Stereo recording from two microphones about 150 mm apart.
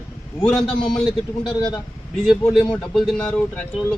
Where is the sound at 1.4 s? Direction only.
30° left (ahead or behind).